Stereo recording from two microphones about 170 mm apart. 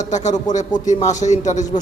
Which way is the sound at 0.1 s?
45° left (ahead or behind).